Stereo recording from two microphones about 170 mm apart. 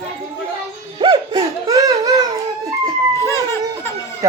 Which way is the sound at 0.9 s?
30° right (ahead or behind).